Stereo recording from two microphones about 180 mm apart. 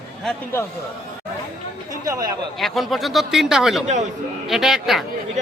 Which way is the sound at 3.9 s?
40° right (ahead or behind).